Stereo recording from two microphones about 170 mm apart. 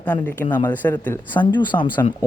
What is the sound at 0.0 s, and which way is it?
Speech, 10° left (ahead or behind).